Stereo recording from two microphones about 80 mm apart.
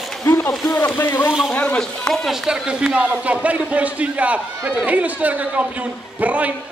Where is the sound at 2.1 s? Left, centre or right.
Centre.